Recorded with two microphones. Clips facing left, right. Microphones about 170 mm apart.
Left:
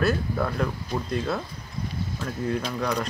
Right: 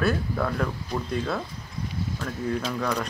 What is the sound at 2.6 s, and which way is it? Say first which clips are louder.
Speech: even; 10° left (ahead or behind).